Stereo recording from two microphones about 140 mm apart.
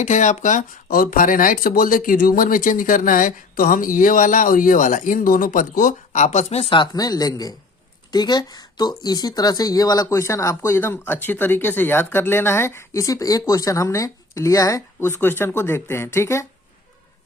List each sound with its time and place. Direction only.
0.0 s speech: 60° left (ahead or behind); by 16.5 s 20° left (ahead or behind)